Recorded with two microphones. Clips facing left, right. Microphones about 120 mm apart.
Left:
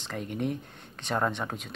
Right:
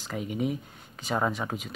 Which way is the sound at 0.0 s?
5° right (ahead or behind).